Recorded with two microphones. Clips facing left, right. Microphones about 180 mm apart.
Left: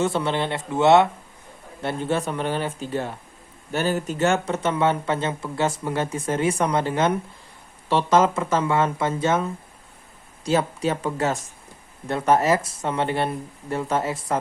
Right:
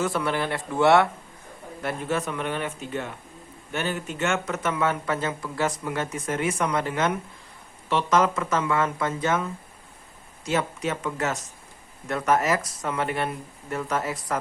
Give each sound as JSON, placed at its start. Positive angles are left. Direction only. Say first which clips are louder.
{"t": 0.0, "sound": "speech", "louder": "left 3 dB", "side_deg": 25}
{"t": 10.4, "sound": "speech", "louder": "left 4 dB", "side_deg": 35}